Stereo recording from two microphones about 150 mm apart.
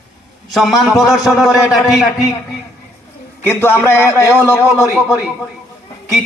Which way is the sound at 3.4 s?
15° left (ahead or behind).